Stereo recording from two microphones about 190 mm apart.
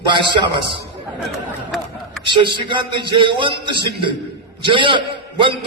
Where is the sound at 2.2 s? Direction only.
25° right (ahead or behind).